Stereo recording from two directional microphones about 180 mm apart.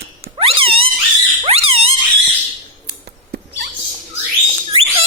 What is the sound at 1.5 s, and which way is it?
Squeak, 35° right (ahead or behind).